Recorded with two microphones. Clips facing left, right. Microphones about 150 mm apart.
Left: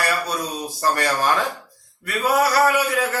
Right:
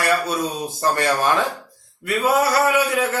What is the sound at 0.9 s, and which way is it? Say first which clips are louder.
Speech: right 2 dB; 20° right (ahead or behind).